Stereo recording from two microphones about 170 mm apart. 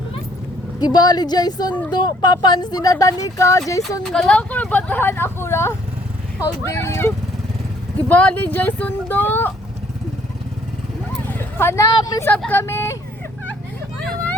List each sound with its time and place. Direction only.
0.8 s speech: 25° left (ahead or behind)
4.1 s speech: 5° left (ahead or behind)
11.3 s speech: 15° left (ahead or behind)
12.3 s speech: 10° left (ahead or behind)